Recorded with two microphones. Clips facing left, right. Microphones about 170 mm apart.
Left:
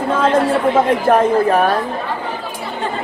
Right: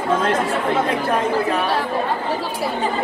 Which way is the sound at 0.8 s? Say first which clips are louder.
Left 6 dB; 50° left (ahead or behind).